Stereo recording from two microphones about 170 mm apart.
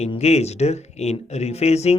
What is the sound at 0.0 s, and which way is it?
Speech, 40° left (ahead or behind).